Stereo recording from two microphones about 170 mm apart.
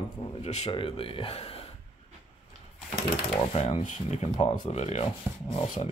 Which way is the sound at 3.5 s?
35° left (ahead or behind).